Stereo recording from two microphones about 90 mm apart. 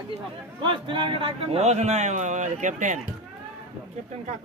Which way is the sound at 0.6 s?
70° right (ahead or behind).